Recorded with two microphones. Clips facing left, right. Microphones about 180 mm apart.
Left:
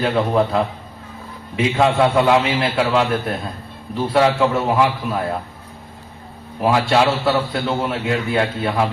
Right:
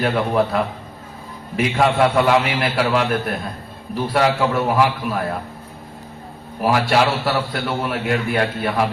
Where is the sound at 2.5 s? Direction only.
25° left (ahead or behind).